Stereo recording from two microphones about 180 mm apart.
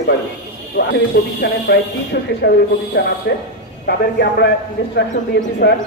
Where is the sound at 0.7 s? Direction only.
65° left (ahead or behind).